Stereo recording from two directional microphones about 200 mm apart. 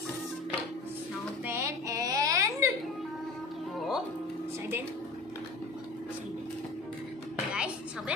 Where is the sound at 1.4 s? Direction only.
15° right (ahead or behind).